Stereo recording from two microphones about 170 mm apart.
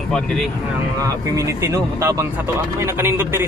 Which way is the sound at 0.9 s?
20° right (ahead or behind).